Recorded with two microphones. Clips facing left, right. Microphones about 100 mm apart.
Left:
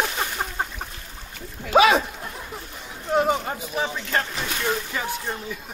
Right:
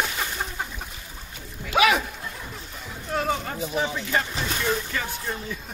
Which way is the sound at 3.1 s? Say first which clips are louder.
Left 5 dB; 20° left (ahead or behind).